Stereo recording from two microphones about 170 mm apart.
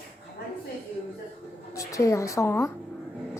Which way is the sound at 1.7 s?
20° left (ahead or behind).